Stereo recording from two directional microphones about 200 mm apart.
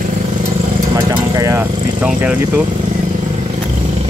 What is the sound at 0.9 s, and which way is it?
Speech, 20° right (ahead or behind).